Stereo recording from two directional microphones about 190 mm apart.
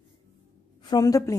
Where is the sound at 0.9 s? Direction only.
20° left (ahead or behind).